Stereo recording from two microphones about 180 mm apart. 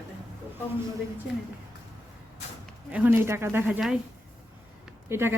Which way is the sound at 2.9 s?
10° right (ahead or behind).